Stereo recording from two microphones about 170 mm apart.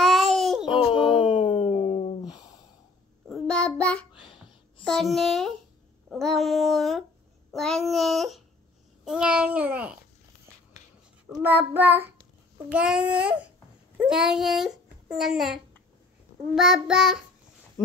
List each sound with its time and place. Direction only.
0.0 s babbling: centre (ahead or behind)
0.7 s a sound: 30° left (ahead or behind)
3.3 s child singing: 5° left (ahead or behind)
4.2 s a sound: 30° left (ahead or behind)
4.8 s speech: centre (ahead or behind)
6.0 s a sound: centre (ahead or behind)
7.5 s child singing: centre (ahead or behind)
9.0 s babbling: 5° right (ahead or behind)
11.2 s child singing: 10° right (ahead or behind)
12.7 s a child's voice: 5° right (ahead or behind)
16.5 s child singing: centre (ahead or behind)
17.8 s a sound: 20° left (ahead or behind)